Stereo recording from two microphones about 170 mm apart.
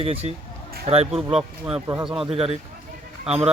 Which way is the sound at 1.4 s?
5° right (ahead or behind).